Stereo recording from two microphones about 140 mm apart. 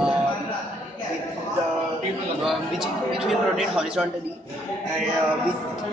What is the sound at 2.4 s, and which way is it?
A man's voice, centre (ahead or behind).